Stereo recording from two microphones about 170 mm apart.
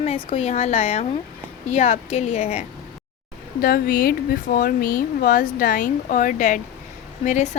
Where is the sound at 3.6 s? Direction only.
60° left (ahead or behind).